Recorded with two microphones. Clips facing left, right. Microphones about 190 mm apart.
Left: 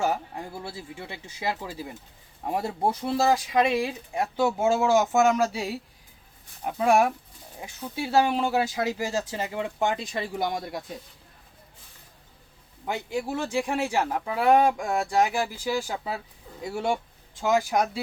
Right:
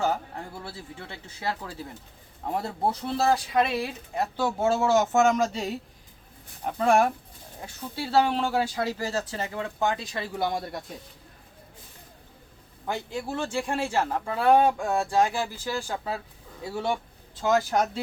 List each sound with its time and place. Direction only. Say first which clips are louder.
0.0 s speech: even; 10° left (ahead or behind)
12.8 s a man's voice: left 2 dB; 10° left (ahead or behind)